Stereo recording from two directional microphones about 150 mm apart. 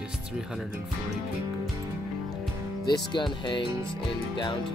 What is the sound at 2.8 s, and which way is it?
Speech, 30° left (ahead or behind).